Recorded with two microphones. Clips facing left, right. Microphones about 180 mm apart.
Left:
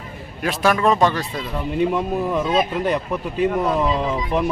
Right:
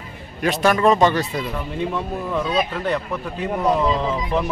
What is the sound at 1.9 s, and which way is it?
Speech, 15° left (ahead or behind).